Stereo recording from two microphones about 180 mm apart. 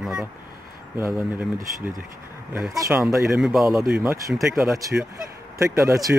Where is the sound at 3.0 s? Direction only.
Centre (ahead or behind).